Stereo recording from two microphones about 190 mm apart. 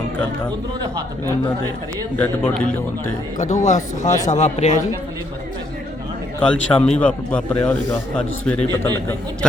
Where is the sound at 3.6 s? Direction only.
40° left (ahead or behind).